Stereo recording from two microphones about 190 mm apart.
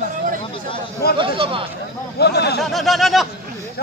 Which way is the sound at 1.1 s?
25° right (ahead or behind).